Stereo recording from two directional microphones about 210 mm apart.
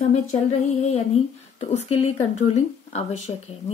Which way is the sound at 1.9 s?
30° left (ahead or behind).